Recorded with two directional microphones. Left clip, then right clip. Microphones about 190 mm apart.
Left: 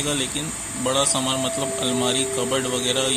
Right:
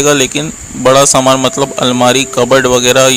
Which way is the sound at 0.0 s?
45° right (ahead or behind).